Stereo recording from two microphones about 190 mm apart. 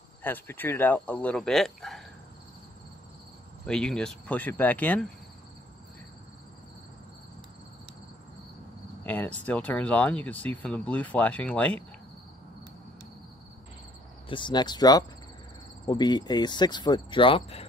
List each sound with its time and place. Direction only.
0.2 s speech: 10° left (ahead or behind)
3.6 s speech: 5° left (ahead or behind)
9.0 s cricket: 10° left (ahead or behind)
9.5 s speech: 5° left (ahead or behind)
14.3 s speech: 25° left (ahead or behind)